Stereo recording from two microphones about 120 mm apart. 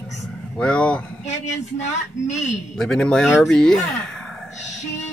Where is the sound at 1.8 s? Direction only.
75° left (ahead or behind).